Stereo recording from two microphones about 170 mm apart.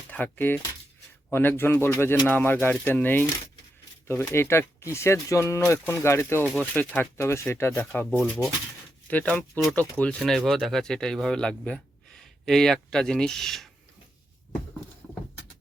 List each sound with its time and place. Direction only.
0.1 s speech: 10° left (ahead or behind)